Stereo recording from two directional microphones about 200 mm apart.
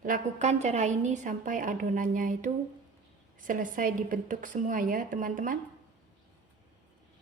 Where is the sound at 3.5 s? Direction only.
40° right (ahead or behind).